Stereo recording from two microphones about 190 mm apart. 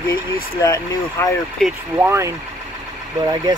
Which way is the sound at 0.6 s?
20° left (ahead or behind).